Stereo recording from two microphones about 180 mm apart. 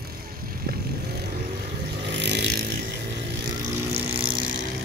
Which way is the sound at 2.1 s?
75° right (ahead or behind).